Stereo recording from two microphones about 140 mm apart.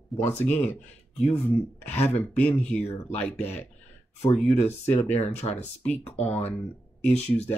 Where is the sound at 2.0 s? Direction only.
15° left (ahead or behind).